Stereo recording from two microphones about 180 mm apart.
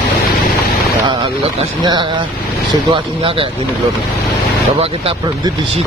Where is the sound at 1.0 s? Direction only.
25° right (ahead or behind).